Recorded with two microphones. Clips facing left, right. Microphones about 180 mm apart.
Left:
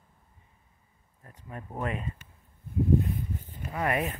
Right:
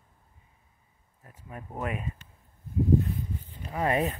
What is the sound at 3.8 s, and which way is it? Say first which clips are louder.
Speech: right 2 dB; 25° right (ahead or behind).